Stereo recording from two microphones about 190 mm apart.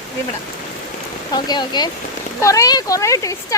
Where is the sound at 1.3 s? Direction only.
20° left (ahead or behind).